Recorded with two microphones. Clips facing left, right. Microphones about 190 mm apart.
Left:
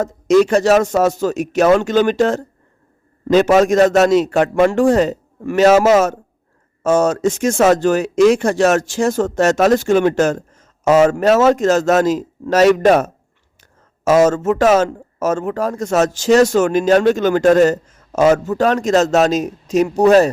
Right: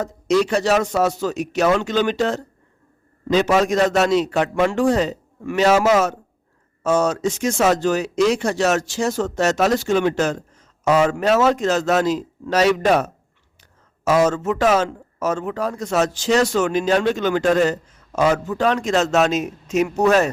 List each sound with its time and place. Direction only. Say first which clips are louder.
0.0 s speech: left 6 dB; 50° left (ahead or behind)